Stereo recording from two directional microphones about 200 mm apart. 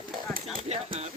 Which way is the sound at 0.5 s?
30° right (ahead or behind).